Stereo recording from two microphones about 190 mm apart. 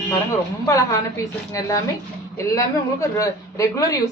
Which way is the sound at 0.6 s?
15° left (ahead or behind).